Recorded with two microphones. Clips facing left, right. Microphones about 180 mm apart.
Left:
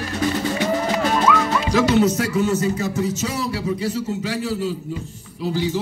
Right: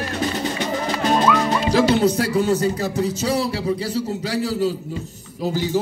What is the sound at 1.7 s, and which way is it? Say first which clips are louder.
Speech: even; 30° right (ahead or behind).